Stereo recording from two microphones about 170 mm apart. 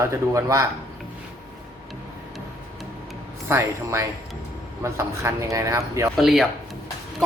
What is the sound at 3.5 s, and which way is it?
Speech, 15° right (ahead or behind).